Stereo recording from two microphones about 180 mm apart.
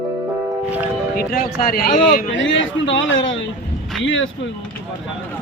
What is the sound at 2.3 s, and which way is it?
A man's voice, 90° left.